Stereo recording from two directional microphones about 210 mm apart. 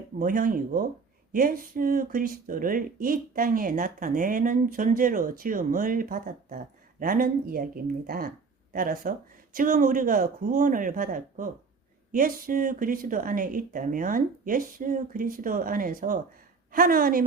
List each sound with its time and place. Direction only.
0.2 s speech: 40° right (ahead or behind)